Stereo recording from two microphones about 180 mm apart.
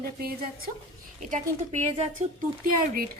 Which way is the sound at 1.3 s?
40° right (ahead or behind).